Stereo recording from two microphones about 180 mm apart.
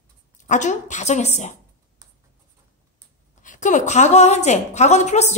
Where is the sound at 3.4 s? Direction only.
45° left (ahead or behind).